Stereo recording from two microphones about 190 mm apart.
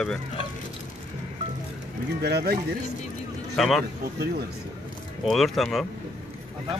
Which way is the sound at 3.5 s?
Centre (ahead or behind).